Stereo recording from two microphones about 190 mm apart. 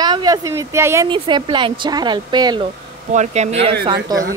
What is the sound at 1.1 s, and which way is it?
Speech, 25° right (ahead or behind).